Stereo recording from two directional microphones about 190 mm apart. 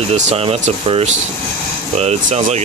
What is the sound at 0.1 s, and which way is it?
Speech, 30° right (ahead or behind).